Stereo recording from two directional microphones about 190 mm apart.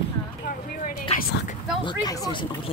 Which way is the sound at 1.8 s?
25° left (ahead or behind).